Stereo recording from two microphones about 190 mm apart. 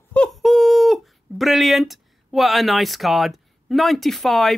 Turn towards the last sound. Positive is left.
turn(degrees=0)  # may be behind; listen again after turning